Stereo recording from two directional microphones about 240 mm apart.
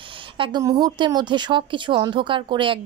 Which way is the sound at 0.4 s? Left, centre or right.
Centre.